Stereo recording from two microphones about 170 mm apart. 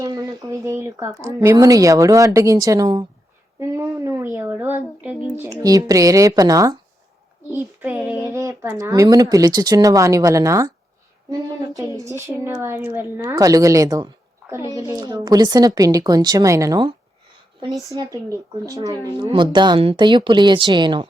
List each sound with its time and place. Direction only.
0.0 s speech: 20° right (ahead or behind)
7.5 s child singing: 10° right (ahead or behind)
8.9 s speech: 20° right (ahead or behind)
12.2 s speech: 15° right (ahead or behind)
14.5 s child singing: 20° right (ahead or behind)
14.9 s speech: 25° right (ahead or behind)